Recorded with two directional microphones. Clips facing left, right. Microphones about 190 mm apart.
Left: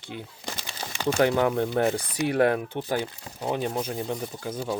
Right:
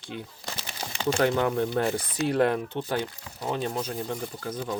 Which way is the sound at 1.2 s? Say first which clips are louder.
Left 2 dB; 15° left (ahead or behind).